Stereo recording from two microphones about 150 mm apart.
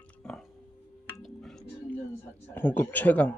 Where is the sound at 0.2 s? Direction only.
5° left (ahead or behind).